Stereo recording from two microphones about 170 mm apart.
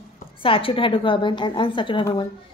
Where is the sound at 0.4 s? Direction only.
30° left (ahead or behind).